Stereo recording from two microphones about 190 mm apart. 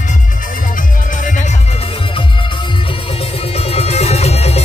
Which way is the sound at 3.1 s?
30° left (ahead or behind).